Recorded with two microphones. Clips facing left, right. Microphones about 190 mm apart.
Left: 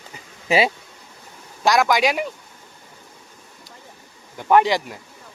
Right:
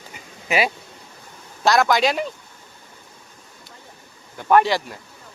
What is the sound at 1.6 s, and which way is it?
Speech, 15° left (ahead or behind).